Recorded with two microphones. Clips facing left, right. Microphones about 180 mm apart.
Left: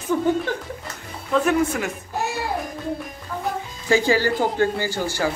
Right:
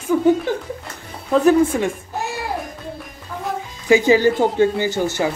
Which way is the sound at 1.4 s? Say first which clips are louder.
Right 9 dB; 30° right (ahead or behind).